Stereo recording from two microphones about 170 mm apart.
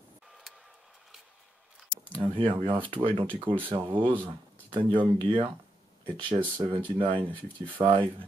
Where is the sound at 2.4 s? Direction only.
30° right (ahead or behind).